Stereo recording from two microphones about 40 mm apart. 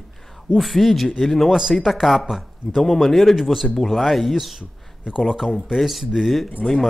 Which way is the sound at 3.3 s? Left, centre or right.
Centre.